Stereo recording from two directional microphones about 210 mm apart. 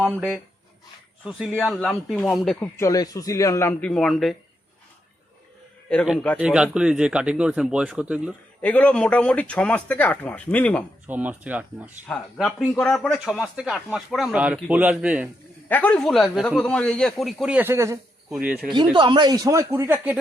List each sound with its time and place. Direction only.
0.0 s speech: 10° right (ahead or behind)
2.7 s speech: 15° left (ahead or behind)
5.9 s speech: 5° left (ahead or behind)
6.4 s speech: 5° right (ahead or behind)
8.6 s speech: 5° left (ahead or behind)
11.0 s speech: 5° right (ahead or behind)
12.0 s speech: 5° left (ahead or behind)
15.7 s speech: 5° left (ahead or behind)
18.9 s speech: 20° right (ahead or behind)